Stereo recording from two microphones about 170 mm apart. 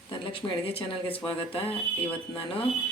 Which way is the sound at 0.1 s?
30° left (ahead or behind).